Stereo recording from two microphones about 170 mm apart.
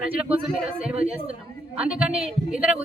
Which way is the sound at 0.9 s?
35° right (ahead or behind).